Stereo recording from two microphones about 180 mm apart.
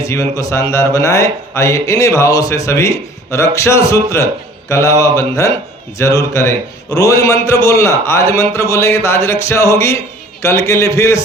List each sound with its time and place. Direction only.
0.0 s speech: 15° left (ahead or behind)